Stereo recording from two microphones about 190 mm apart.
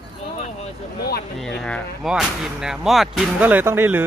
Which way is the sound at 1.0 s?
55° left (ahead or behind).